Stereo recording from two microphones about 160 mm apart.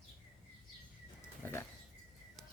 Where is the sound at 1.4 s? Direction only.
15° left (ahead or behind).